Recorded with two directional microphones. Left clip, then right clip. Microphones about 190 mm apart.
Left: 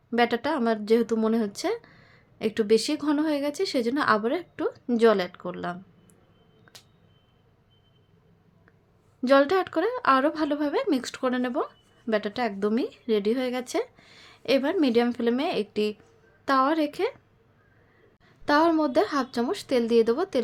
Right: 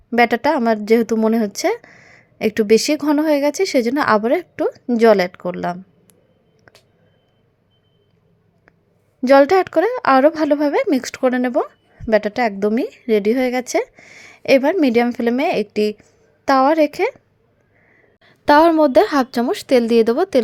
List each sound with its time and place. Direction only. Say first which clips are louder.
0.1 s speech: right 9 dB; 35° right (ahead or behind)
6.7 s a sound: right 2 dB; 30° right (ahead or behind)
9.2 s speech: right 9 dB; 35° right (ahead or behind)
18.2 s speech: right 10 dB; 40° right (ahead or behind)